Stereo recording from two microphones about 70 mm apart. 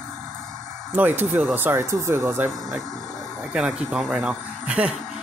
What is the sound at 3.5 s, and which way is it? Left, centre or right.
Speech, centre.